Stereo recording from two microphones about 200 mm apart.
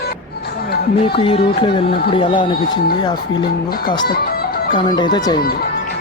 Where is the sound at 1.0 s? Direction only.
25° left (ahead or behind).